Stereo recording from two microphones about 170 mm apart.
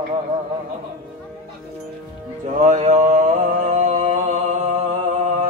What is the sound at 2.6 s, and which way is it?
Mantra, 45° right (ahead or behind).